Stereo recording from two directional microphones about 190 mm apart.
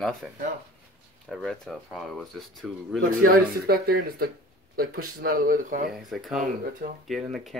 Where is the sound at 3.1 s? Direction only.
50° right (ahead or behind).